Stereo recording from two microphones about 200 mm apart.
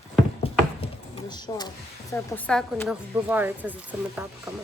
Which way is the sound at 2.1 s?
10° left (ahead or behind).